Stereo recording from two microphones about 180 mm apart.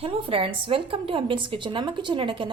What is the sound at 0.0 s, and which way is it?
A woman's voice, 30° right (ahead or behind).